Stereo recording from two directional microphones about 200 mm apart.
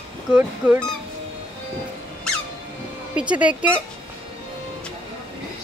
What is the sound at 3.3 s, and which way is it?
Speech, 5° right (ahead or behind).